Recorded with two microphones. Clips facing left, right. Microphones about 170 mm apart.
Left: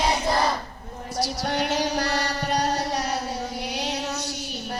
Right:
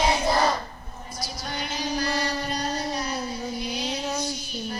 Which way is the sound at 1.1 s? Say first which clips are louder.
Left 8 dB; 75° left (ahead or behind).